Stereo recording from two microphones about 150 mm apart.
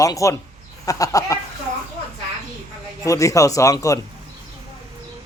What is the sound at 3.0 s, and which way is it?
Speech, 20° left (ahead or behind).